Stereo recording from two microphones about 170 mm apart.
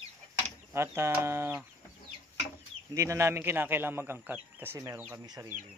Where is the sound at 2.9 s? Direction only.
15° right (ahead or behind).